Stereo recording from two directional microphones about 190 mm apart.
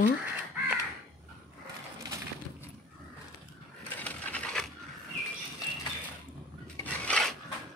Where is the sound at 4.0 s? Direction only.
5° left (ahead or behind).